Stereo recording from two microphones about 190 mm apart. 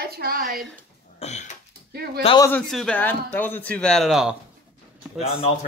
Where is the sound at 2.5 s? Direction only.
Centre (ahead or behind).